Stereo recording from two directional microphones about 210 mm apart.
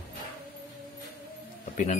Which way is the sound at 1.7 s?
35° left (ahead or behind).